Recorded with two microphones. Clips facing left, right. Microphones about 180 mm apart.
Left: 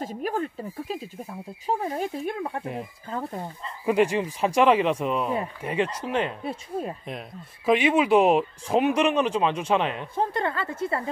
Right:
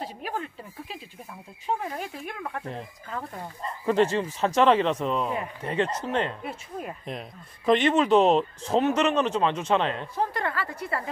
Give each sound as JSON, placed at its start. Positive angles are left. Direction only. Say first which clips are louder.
{"t": 0.0, "sound": "a woman's voice", "louder": "left 5 dB", "side_deg": 45}
{"t": 3.8, "sound": "speech", "louder": "left 1 dB", "side_deg": 10}
{"t": 6.4, "sound": "speech", "louder": "left 5 dB", "side_deg": 30}
{"t": 7.1, "sound": "speech", "louder": "even", "side_deg": 5}
{"t": 10.1, "sound": "a woman's voice", "louder": "left 2 dB", "side_deg": 25}